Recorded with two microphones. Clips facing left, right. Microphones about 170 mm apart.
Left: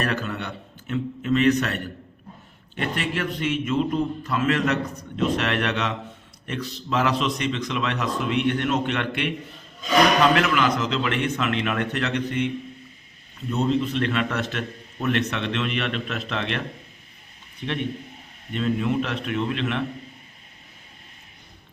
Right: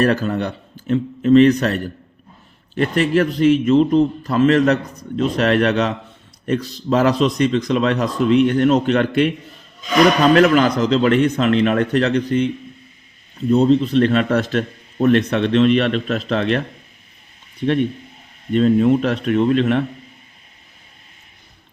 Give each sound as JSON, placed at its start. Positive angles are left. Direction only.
{"t": 0.0, "sound": "a man's voice", "side_deg": -35}
{"t": 10.3, "sound": "a man's voice", "side_deg": -40}
{"t": 13.5, "sound": "a man's voice", "side_deg": -35}